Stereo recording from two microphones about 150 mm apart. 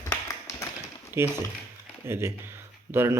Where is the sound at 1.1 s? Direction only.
15° right (ahead or behind).